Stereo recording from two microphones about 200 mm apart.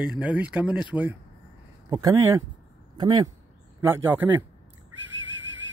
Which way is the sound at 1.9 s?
20° right (ahead or behind).